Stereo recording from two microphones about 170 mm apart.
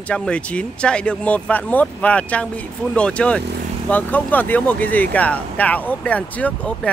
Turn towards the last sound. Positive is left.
turn(degrees=10)  # may be behind; listen again after turning